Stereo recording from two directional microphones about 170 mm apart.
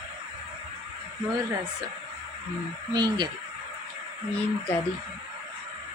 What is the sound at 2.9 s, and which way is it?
Speech, 25° right (ahead or behind).